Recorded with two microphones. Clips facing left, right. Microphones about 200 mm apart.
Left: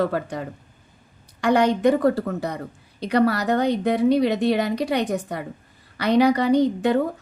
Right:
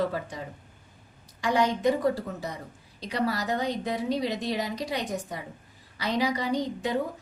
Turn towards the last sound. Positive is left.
turn(degrees=65)  # may be behind; listen again after turning